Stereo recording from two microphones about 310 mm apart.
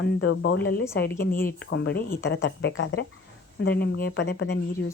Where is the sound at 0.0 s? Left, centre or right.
Left.